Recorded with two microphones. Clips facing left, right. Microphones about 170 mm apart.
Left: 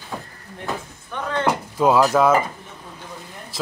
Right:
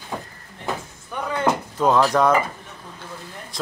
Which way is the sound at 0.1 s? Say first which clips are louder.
Right 1 dB; 10° left (ahead or behind).